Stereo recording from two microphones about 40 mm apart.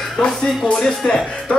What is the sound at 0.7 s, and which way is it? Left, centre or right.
Speech, centre.